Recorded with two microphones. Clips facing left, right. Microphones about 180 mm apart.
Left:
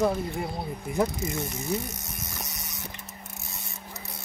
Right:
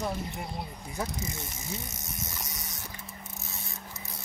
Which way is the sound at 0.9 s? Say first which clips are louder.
Left 9 dB; 60° left (ahead or behind).